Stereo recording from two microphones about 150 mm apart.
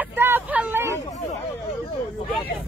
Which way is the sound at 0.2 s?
10° right (ahead or behind).